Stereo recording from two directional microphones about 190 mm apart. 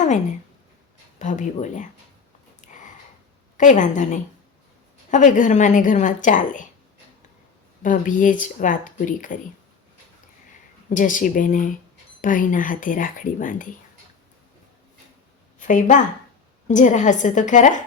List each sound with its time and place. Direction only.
0.0 s a woman's voice: 40° left (ahead or behind)
2.6 s sniff: 40° left (ahead or behind)
3.6 s a woman's voice: 40° left (ahead or behind)
7.8 s speech: 45° left (ahead or behind)
10.9 s speech: 45° left (ahead or behind)
15.5 s a woman's voice: 40° left (ahead or behind)